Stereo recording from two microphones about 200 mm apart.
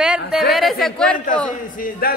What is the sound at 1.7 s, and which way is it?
Speech, 50° left (ahead or behind).